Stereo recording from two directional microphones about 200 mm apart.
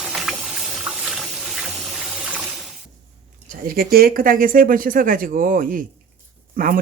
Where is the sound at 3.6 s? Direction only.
50° right (ahead or behind).